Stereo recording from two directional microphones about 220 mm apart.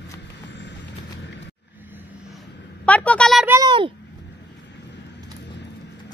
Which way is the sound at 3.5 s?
15° right (ahead or behind).